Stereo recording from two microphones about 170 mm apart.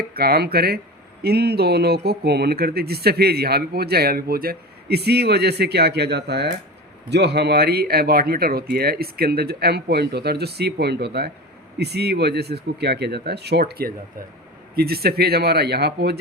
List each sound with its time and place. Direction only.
0.0 s speech: 65° right (ahead or behind)